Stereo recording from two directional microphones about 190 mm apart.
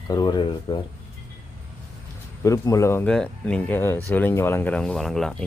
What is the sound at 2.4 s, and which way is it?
Speech, 15° left (ahead or behind).